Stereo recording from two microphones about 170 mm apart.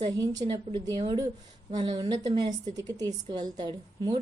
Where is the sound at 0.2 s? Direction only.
25° right (ahead or behind).